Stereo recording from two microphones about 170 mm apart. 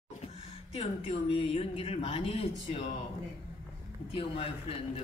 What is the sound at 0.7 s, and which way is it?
A woman's voice, 35° left (ahead or behind).